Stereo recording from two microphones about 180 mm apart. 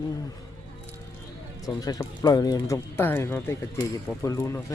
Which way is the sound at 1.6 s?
20° left (ahead or behind).